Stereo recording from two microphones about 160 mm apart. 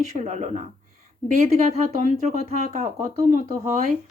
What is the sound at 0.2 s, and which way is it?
Speech, 45° right (ahead or behind).